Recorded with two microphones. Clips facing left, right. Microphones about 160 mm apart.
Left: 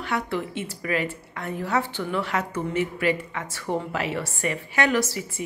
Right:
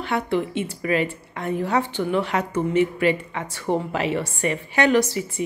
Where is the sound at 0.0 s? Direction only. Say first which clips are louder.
Right 4 dB; 20° right (ahead or behind).